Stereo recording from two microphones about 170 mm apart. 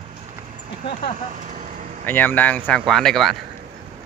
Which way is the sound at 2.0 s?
10° left (ahead or behind).